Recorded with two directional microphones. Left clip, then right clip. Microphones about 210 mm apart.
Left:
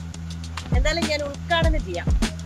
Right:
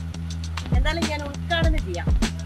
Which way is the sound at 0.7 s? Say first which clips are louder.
Left 3 dB; 15° left (ahead or behind).